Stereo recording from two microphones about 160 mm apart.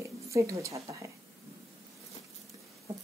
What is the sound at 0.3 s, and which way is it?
Speech, 20° right (ahead or behind).